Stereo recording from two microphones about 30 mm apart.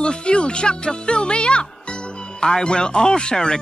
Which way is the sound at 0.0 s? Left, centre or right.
Left.